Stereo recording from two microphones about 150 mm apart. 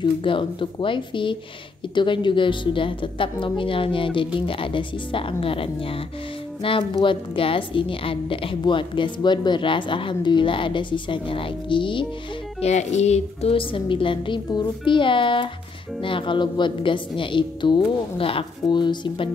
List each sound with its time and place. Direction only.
0.0 s a woman's voice: 35° left (ahead or behind)
12.5 s a woman's voice: 45° left (ahead or behind)